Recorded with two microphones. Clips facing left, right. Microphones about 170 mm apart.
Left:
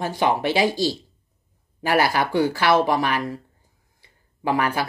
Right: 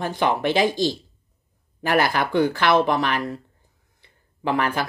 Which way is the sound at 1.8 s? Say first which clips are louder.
Left 1 dB; 10° left (ahead or behind).